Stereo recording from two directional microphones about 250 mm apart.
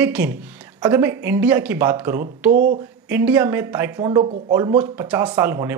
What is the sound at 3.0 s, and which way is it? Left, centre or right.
A man's voice, centre.